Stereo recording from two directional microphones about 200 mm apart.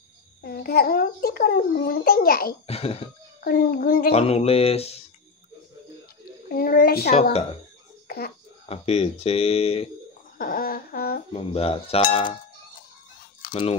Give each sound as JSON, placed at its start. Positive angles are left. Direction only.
{"t": 0.4, "sound": "a child's voice", "side_deg": 50}
{"t": 2.6, "sound": "cutlery", "side_deg": 30}
{"t": 3.4, "sound": "a child's voice", "side_deg": 50}
{"t": 4.1, "sound": "speech", "side_deg": 30}
{"t": 6.5, "sound": "a child's voice", "side_deg": 50}
{"t": 8.6, "sound": "speech", "side_deg": 30}
{"t": 10.3, "sound": "a child's voice", "side_deg": 45}
{"t": 11.3, "sound": "cutlery", "side_deg": 30}
{"t": 13.5, "sound": "speech", "side_deg": 25}